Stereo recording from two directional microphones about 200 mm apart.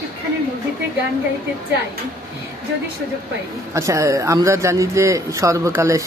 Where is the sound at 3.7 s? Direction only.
15° right (ahead or behind).